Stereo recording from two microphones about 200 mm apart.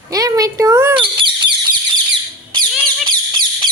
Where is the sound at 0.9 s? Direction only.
25° right (ahead or behind).